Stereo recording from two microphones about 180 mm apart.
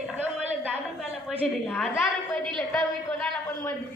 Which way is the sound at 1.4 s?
5° left (ahead or behind).